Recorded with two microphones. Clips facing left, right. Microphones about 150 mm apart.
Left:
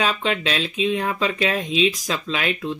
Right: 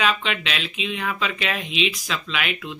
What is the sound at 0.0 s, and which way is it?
Speech, 35° left (ahead or behind).